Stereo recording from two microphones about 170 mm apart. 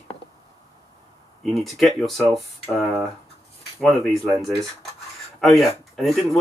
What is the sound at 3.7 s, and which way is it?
Speech, centre (ahead or behind).